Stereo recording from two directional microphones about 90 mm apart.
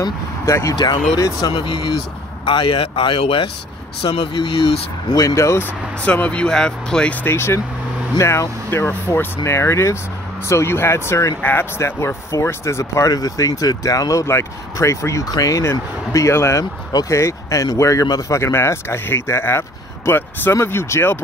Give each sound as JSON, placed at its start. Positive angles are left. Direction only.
{"t": 0.5, "sound": "speech", "side_deg": 35}
{"t": 1.5, "sound": "speech", "side_deg": 70}
{"t": 4.0, "sound": "speech", "side_deg": 65}
{"t": 5.2, "sound": "speech", "side_deg": 35}
{"t": 6.0, "sound": "speech", "side_deg": 15}
{"t": 7.2, "sound": "speech", "side_deg": 30}